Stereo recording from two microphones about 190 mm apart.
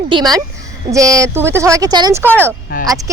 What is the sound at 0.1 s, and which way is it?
Speech, 20° right (ahead or behind).